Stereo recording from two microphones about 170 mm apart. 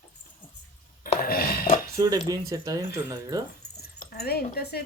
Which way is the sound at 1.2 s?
60° left (ahead or behind).